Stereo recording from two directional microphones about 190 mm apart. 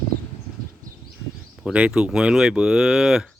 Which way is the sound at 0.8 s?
45° right (ahead or behind).